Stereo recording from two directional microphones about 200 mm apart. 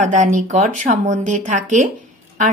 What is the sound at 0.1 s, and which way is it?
Speech, 40° right (ahead or behind).